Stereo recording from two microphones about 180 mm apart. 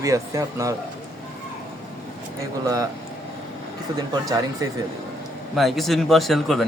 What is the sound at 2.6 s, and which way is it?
Speech, 20° right (ahead or behind).